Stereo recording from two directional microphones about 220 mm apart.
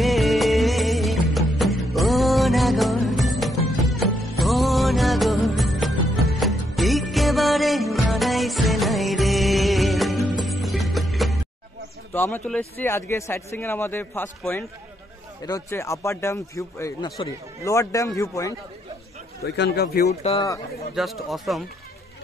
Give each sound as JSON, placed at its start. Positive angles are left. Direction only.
{"t": 0.0, "sound": "music", "side_deg": 0}
{"t": 12.1, "sound": "speech", "side_deg": 10}
{"t": 19.4, "sound": "speech", "side_deg": 50}
{"t": 20.3, "sound": "speech", "side_deg": 15}
{"t": 20.9, "sound": "speech", "side_deg": 0}